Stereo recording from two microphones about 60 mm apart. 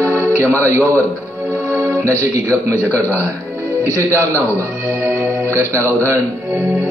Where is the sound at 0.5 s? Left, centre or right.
Right.